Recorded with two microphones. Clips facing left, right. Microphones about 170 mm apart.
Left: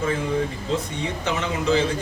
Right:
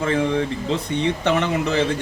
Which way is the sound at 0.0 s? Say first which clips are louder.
Right 3 dB; 70° right (ahead or behind).